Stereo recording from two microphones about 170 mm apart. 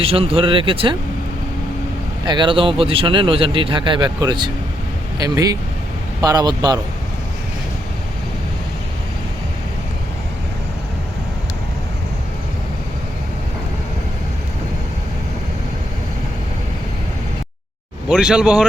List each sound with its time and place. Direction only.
0.0 s speech: 35° right (ahead or behind)
2.2 s a man's voice: 25° right (ahead or behind)
18.1 s speech: 5° right (ahead or behind)